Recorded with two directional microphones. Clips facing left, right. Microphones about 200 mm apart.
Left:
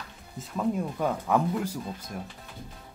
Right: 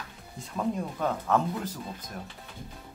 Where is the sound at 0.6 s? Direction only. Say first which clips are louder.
Left 2 dB; 5° left (ahead or behind).